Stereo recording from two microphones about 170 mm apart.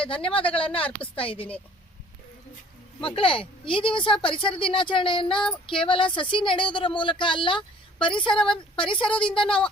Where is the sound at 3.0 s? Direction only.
30° left (ahead or behind).